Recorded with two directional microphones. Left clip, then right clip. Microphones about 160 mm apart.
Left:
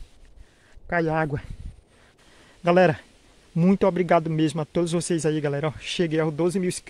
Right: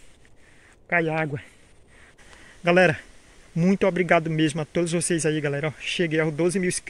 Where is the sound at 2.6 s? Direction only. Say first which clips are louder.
Even; 15° left (ahead or behind).